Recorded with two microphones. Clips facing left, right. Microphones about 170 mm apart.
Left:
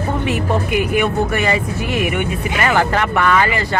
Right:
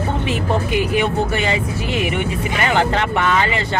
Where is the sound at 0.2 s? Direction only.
25° right (ahead or behind).